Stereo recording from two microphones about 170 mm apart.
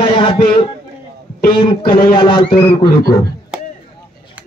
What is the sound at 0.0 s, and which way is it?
A man's voice, 30° left (ahead or behind).